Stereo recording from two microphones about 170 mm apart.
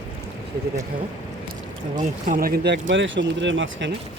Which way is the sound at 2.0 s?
50° right (ahead or behind).